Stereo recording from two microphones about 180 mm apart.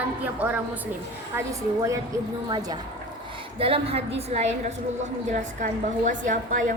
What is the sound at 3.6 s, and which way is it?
Speech, 35° right (ahead or behind).